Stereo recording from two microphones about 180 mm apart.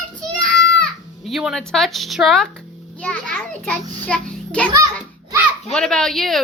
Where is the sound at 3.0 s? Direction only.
5° left (ahead or behind).